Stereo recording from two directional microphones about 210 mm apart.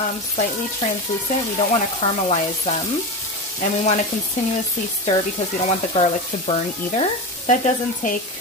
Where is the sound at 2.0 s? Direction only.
30° left (ahead or behind).